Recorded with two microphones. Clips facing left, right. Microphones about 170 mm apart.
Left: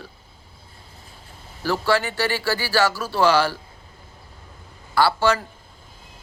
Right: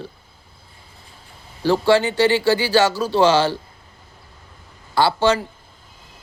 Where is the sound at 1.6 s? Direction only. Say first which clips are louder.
Right 6 dB; 25° right (ahead or behind).